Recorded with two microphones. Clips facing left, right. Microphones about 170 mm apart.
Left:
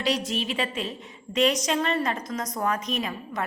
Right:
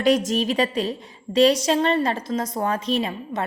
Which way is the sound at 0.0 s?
50° right (ahead or behind).